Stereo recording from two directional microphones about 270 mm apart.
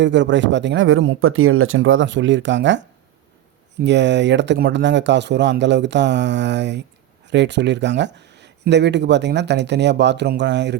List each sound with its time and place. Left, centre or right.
0.0 s speech: right
3.8 s speech: right